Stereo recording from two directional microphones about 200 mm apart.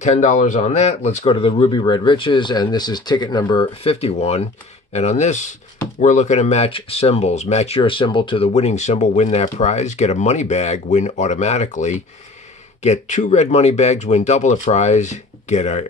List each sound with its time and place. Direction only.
0.0 s speech: 35° left (ahead or behind)